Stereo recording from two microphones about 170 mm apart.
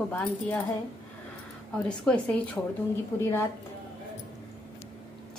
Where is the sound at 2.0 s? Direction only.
10° left (ahead or behind).